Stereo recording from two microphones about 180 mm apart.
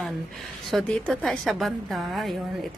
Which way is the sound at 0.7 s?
5° left (ahead or behind).